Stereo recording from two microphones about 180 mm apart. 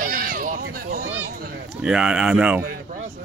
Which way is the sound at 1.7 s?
5° right (ahead or behind).